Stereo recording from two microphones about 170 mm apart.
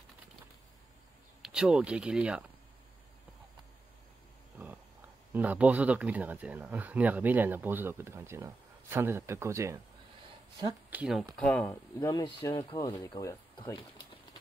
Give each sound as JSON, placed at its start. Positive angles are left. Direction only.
{"t": 1.4, "sound": "speech", "side_deg": -5}
{"t": 5.3, "sound": "speech", "side_deg": -10}
{"t": 10.9, "sound": "speech", "side_deg": -5}
{"t": 11.3, "sound": "speech", "side_deg": 5}